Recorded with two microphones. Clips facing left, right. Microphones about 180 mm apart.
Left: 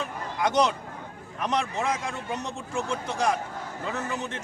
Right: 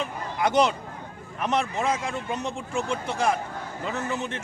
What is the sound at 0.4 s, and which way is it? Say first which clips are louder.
A man's voice: right 2 dB; 10° right (ahead or behind).